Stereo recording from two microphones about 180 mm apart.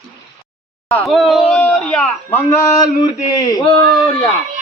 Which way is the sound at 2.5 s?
15° left (ahead or behind).